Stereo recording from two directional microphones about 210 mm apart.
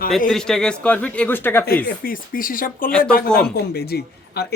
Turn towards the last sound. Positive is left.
turn(degrees=50)  # may be behind; listen again after turning